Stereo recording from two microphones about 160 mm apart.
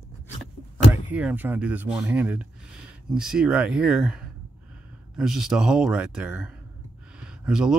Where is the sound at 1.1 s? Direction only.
10° right (ahead or behind).